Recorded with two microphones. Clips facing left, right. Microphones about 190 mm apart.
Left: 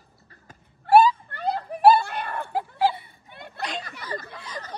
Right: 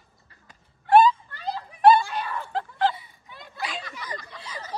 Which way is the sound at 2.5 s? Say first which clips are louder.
Left 2 dB; 10° left (ahead or behind).